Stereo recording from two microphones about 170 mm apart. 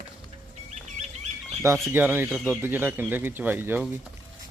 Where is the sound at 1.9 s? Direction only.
10° right (ahead or behind).